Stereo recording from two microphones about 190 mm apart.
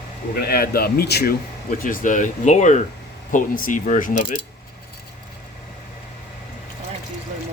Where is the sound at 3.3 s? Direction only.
45° left (ahead or behind).